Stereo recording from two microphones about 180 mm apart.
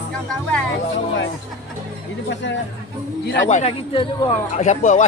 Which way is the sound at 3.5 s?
35° left (ahead or behind).